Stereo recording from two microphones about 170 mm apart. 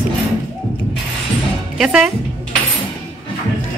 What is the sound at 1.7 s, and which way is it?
Speech, 5° right (ahead or behind).